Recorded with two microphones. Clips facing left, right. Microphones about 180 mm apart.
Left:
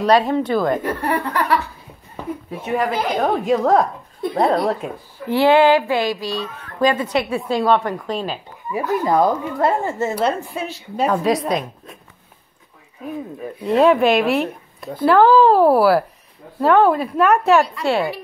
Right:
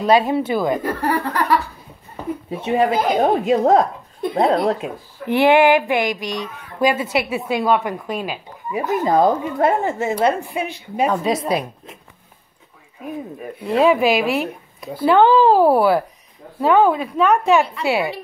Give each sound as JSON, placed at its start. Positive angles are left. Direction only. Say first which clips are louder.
{"t": 0.0, "sound": "speech", "louder": "even", "side_deg": -5}
{"t": 0.8, "sound": "chuckle", "louder": "right 1 dB", "side_deg": -35}
{"t": 2.7, "sound": "a woman's voice", "louder": "right 3 dB", "side_deg": -25}
{"t": 11.1, "sound": "speech", "louder": "left 2 dB", "side_deg": 0}
{"t": 13.7, "sound": "speech", "louder": "left 1 dB", "side_deg": 0}